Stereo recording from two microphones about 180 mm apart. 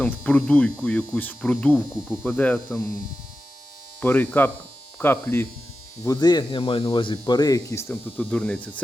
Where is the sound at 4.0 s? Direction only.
10° left (ahead or behind).